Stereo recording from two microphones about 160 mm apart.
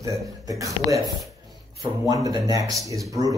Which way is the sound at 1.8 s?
25° right (ahead or behind).